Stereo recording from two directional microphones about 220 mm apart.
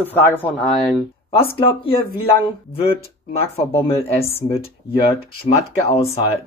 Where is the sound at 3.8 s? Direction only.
25° left (ahead or behind).